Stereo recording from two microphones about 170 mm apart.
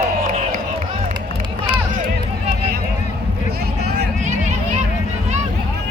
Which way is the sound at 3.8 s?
75° right (ahead or behind).